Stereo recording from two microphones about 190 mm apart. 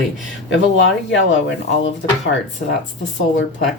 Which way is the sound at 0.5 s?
75° left (ahead or behind).